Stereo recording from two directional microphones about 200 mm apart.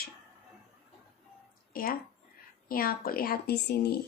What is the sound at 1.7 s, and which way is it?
Speech, 45° left (ahead or behind).